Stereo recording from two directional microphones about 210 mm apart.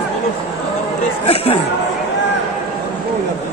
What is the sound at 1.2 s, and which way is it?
Speech, 25° left (ahead or behind).